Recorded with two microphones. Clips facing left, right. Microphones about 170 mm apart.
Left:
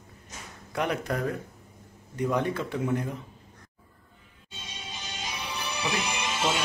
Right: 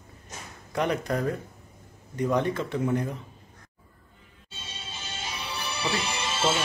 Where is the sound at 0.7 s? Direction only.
5° left (ahead or behind).